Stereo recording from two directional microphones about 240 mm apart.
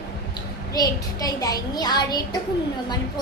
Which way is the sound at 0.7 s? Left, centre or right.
Centre.